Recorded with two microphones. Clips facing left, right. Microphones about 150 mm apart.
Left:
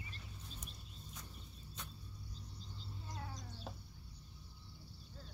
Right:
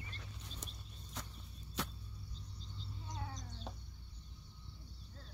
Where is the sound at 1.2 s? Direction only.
80° right.